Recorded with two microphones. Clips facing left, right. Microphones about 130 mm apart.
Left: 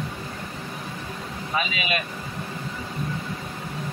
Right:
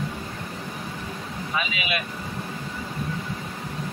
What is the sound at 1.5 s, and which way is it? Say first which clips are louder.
Speech: left 2 dB; 40° left (ahead or behind).